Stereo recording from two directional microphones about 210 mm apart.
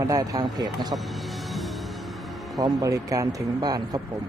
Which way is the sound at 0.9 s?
Centre (ahead or behind).